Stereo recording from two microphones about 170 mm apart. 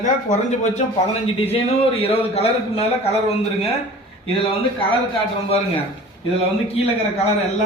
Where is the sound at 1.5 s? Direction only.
35° left (ahead or behind).